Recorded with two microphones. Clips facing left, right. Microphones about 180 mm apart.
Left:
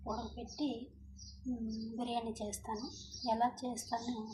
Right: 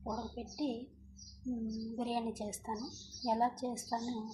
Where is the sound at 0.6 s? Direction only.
45° right (ahead or behind).